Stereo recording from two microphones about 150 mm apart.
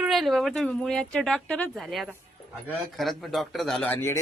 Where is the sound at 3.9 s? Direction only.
15° left (ahead or behind).